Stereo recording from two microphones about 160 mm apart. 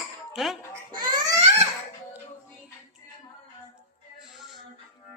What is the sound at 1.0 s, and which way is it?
Crying, 25° right (ahead or behind).